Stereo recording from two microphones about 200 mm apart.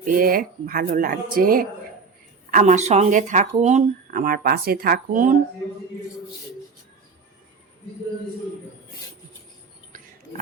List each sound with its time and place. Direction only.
0.0 s speech: 45° right (ahead or behind)